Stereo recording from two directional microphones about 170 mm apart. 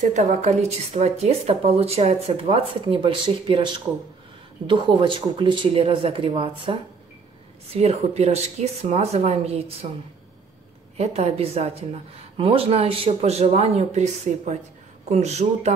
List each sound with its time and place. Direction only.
0.0 s a woman's voice: 45° right (ahead or behind)
11.0 s a woman's voice: 40° right (ahead or behind)